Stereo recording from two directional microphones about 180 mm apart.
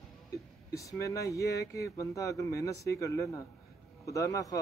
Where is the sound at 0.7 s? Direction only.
15° left (ahead or behind).